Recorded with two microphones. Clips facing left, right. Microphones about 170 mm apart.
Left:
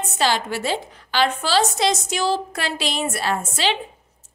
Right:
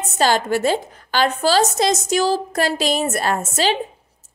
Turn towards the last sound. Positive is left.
turn(degrees=-45)  # may be behind; listen again after turning